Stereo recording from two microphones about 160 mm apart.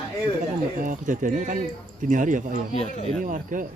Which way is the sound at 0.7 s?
55° right (ahead or behind).